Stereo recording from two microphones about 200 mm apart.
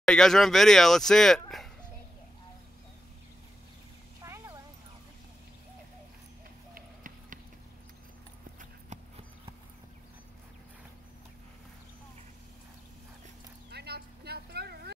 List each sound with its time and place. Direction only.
0.0 s speech: centre (ahead or behind)
4.2 s clip-clop: 15° right (ahead or behind)
6.7 s run: 45° right (ahead or behind)
8.5 s clip-clop: 35° right (ahead or behind)
13.7 s vehicle: 55° right (ahead or behind)